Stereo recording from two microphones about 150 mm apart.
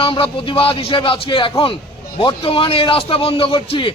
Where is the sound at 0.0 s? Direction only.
35° left (ahead or behind).